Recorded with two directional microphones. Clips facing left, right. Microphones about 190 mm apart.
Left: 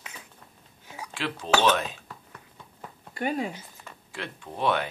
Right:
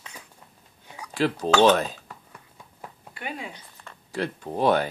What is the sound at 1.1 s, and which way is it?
Speech, 40° right (ahead or behind).